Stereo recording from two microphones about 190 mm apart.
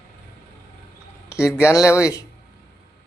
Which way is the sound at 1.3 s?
15° left (ahead or behind).